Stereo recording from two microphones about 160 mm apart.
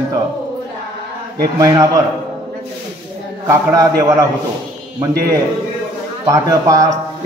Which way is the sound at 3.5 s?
20° right (ahead or behind).